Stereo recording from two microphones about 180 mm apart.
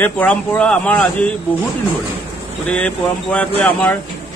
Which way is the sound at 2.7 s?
10° left (ahead or behind).